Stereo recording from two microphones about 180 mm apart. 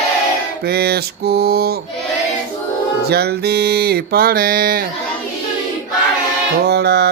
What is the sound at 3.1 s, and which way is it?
Mantra, 60° right (ahead or behind).